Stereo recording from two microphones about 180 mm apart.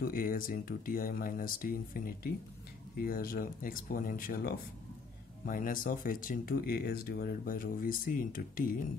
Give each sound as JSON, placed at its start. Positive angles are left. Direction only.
{"t": 0.0, "sound": "speech", "side_deg": 55}